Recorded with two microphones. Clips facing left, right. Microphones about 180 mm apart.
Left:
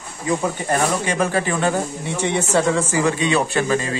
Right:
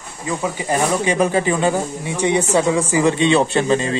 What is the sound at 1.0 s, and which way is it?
A man's voice, 15° right (ahead or behind).